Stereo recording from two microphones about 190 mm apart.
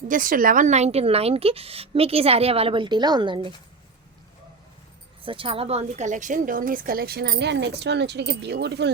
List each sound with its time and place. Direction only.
0.1 s a woman's voice: 45° right (ahead or behind); by 3.5 s 25° right (ahead or behind)
5.2 s a woman's voice: 30° right (ahead or behind); by 8.9 s 65° right (ahead or behind)